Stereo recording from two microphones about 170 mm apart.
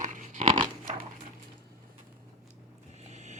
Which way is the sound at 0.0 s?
45° right (ahead or behind).